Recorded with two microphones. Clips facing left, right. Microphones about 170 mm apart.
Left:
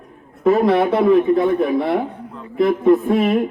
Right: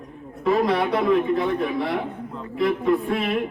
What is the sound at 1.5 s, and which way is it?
A man's voice, 45° left (ahead or behind).